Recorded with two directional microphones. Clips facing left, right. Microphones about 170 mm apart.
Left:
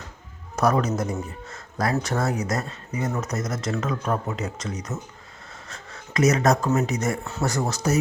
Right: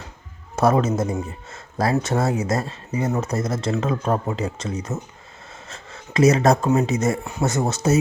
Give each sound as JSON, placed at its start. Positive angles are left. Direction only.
{"t": 0.5, "sound": "speech", "side_deg": -25}